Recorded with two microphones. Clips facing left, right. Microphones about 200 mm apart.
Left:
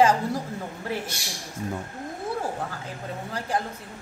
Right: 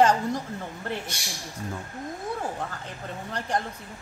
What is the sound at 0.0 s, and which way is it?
Speech, 5° left (ahead or behind).